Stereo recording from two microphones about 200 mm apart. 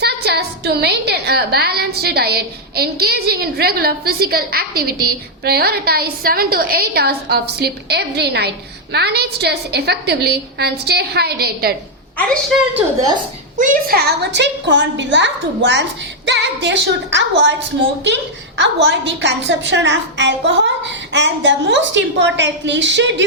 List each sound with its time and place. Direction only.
0.0 s a woman's voice: 55° right (ahead or behind)
12.7 s a woman's voice: 15° right (ahead or behind)
13.6 s a woman's voice: 45° right (ahead or behind); by 23.2 s 65° right (ahead or behind)